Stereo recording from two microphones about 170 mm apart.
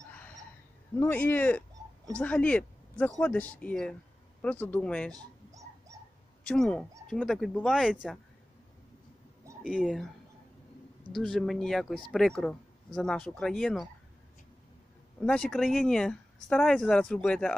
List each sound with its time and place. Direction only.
0.9 s speech: 10° left (ahead or behind)
5.1 s dog: 20° right (ahead or behind)
6.4 s speech: 5° left (ahead or behind)
9.6 s speech: 5° right (ahead or behind)
11.1 s speech: centre (ahead or behind)
15.2 s speech: 5° left (ahead or behind)